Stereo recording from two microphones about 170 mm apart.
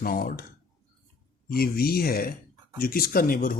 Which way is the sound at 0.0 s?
60° left (ahead or behind).